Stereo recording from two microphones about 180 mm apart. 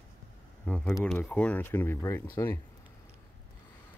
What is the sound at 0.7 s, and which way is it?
Speech, 5° left (ahead or behind).